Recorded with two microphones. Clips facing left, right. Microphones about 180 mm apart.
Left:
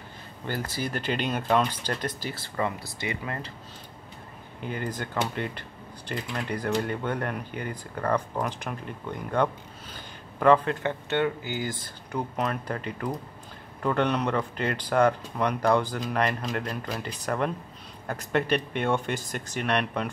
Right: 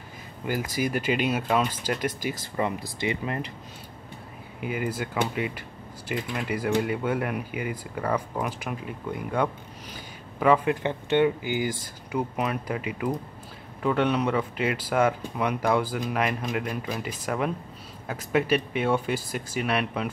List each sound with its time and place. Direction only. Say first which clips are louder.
0.5 s speech: right 4 dB; 10° right (ahead or behind)
4.6 s speech: right 3 dB; 10° right (ahead or behind)